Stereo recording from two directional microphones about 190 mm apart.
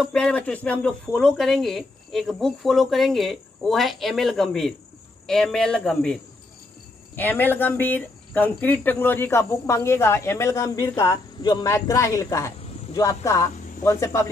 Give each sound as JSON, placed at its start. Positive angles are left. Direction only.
{"t": 0.0, "sound": "speech", "side_deg": 5}
{"t": 7.2, "sound": "cricket", "side_deg": 10}